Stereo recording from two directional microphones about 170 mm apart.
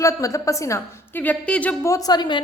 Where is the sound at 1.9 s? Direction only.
20° left (ahead or behind).